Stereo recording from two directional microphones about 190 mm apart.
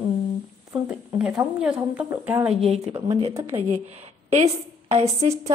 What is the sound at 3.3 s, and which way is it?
Speech, 10° right (ahead or behind).